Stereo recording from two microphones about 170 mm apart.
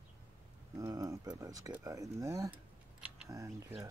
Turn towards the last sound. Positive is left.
turn(degrees=-15)  # may be behind; listen again after turning